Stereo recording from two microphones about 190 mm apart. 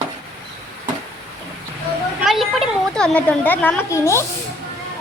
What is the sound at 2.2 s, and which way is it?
A woman's voice, centre (ahead or behind).